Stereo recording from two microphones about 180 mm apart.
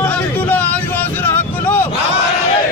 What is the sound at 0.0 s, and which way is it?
Vehicle, 10° left (ahead or behind).